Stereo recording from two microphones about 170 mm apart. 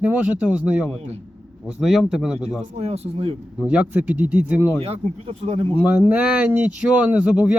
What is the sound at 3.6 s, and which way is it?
Speech, 5° right (ahead or behind).